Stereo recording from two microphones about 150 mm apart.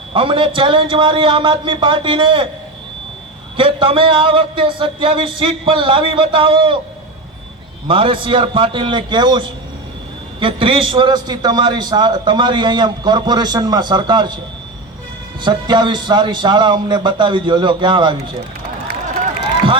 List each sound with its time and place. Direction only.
0.1 s a man's voice: 35° right (ahead or behind)
3.6 s a man's voice: 35° right (ahead or behind)
7.9 s a man's voice: 35° right (ahead or behind)
10.4 s a man's voice: 35° right (ahead or behind)
15.4 s a man's voice: 30° right (ahead or behind)